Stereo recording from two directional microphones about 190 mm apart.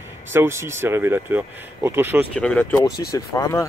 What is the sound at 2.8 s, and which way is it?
Speech, 20° left (ahead or behind).